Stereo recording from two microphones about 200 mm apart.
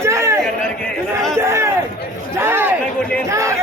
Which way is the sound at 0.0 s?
15° right (ahead or behind).